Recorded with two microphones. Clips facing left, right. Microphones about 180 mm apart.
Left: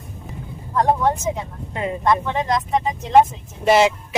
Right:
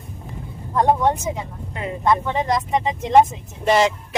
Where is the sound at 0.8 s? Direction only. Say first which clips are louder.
Right 1 dB; 20° right (ahead or behind).